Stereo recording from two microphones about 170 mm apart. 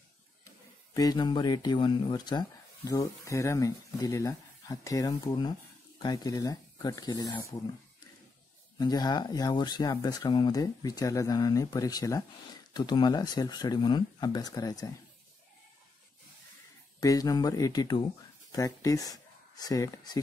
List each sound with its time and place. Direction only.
0.9 s speech: 25° left (ahead or behind)
8.7 s speech: 25° left (ahead or behind)
17.0 s speech: 20° left (ahead or behind)